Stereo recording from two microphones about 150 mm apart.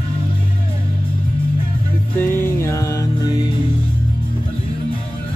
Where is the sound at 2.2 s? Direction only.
15° left (ahead or behind).